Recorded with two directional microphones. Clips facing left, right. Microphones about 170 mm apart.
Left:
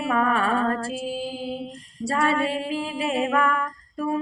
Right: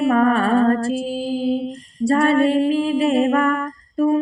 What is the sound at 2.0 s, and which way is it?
Music, 50° right (ahead or behind).